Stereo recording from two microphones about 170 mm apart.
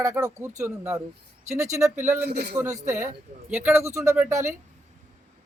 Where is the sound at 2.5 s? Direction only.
15° right (ahead or behind).